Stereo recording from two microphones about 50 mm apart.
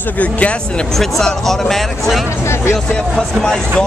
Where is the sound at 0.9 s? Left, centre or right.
Centre.